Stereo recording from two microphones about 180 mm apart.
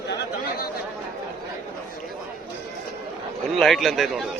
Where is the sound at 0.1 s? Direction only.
55° left (ahead or behind).